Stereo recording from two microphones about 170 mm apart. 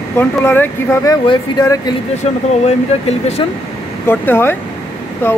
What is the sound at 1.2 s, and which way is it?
Speech, 25° left (ahead or behind).